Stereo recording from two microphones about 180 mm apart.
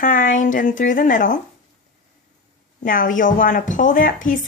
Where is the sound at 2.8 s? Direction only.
50° left (ahead or behind).